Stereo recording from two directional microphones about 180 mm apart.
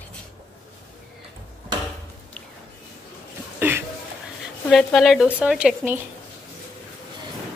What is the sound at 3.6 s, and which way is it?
Cough, 10° right (ahead or behind).